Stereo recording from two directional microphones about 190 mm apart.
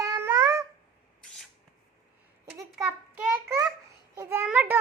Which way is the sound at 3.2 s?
10° right (ahead or behind).